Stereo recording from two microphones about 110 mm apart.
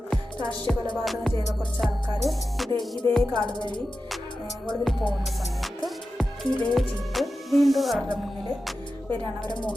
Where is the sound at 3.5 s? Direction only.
45° left (ahead or behind).